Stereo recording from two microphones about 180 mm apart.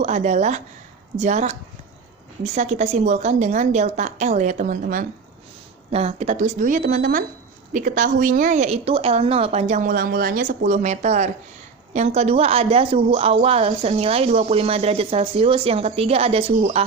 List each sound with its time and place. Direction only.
0.0 s speech: 40° right (ahead or behind)
5.9 s speech: 35° right (ahead or behind)